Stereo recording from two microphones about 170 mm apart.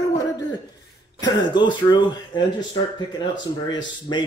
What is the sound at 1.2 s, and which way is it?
Speech, 25° left (ahead or behind).